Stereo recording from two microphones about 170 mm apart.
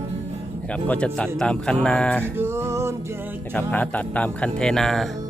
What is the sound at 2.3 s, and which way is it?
Music, 15° right (ahead or behind).